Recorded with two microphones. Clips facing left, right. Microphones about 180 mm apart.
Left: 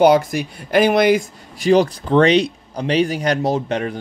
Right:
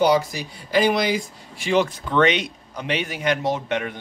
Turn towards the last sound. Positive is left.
turn(degrees=35)  # may be behind; listen again after turning